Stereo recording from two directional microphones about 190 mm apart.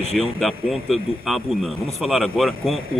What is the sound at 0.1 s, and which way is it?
A man's voice, centre (ahead or behind).